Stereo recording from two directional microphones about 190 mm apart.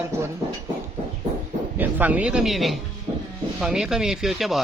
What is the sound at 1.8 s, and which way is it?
Speech, 10° right (ahead or behind).